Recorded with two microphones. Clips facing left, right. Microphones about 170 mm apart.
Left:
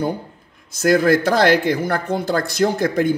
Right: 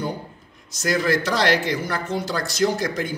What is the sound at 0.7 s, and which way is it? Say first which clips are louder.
A man's voice: left 7 dB; 55° left (ahead or behind).